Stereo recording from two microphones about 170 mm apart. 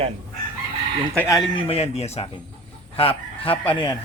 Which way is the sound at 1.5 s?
35° left (ahead or behind).